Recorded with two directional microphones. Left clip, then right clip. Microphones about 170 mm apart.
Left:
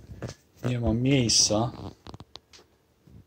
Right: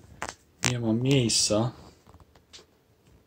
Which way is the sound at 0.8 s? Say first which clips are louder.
Left 2 dB; 35° left (ahead or behind).